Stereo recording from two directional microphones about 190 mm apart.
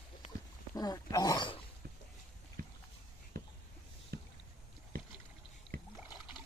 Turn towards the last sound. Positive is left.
turn(degrees=20)  # may be behind; listen again after turning